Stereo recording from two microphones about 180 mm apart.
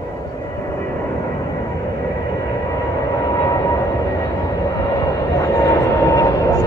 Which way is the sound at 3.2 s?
20° left (ahead or behind).